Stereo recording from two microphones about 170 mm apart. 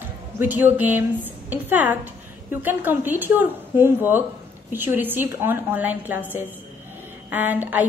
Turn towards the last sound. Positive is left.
turn(degrees=-10)  # may be behind; listen again after turning